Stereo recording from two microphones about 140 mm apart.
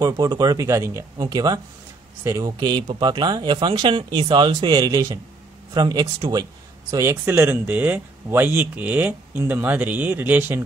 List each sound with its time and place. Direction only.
0.0 s speech: 30° right (ahead or behind)